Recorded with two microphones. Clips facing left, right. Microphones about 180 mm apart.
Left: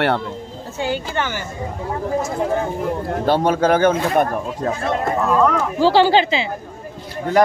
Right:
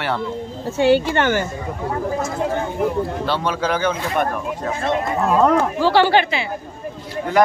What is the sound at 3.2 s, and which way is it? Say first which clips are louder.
Speech: left 10 dB; 45° left (ahead or behind).